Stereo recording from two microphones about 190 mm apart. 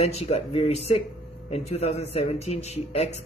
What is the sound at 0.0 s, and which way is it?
Speech, 35° left (ahead or behind).